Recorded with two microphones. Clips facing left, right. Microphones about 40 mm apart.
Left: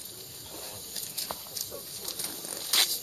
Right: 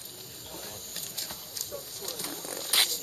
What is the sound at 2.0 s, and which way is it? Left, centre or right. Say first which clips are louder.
Wild animals: right 3 dB; centre.